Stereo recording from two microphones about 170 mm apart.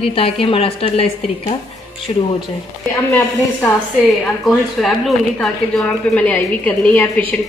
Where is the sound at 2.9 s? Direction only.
15° left (ahead or behind).